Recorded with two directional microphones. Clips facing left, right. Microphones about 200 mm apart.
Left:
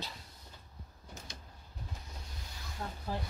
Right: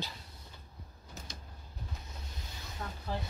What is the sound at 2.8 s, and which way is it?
Snake, 25° left (ahead or behind).